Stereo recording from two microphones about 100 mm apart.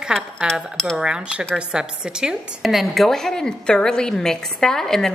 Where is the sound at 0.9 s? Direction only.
10° right (ahead or behind).